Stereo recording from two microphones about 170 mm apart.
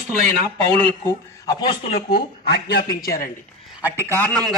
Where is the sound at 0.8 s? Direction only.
20° left (ahead or behind).